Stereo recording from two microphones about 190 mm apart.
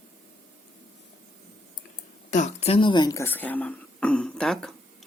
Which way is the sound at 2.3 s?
35° left (ahead or behind).